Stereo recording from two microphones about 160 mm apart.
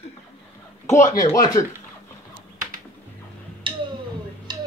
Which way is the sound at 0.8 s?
50° left (ahead or behind).